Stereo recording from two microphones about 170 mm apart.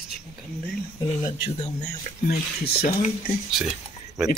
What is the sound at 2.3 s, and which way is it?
Speech, 65° left (ahead or behind).